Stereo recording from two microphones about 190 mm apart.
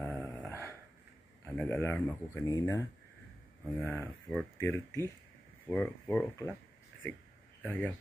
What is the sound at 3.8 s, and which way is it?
Speech, 10° left (ahead or behind).